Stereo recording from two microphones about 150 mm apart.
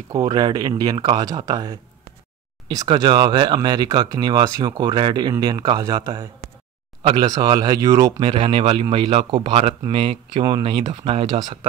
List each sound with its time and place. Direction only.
0.1 s speech: 30° right (ahead or behind)
8.3 s speech: 35° right (ahead or behind)